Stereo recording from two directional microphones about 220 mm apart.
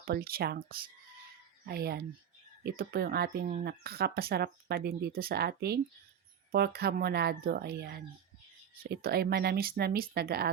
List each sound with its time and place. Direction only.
0.0 s speech: 45° right (ahead or behind)